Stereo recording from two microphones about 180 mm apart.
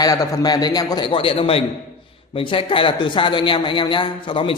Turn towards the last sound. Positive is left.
turn(degrees=30)  # may be behind; listen again after turning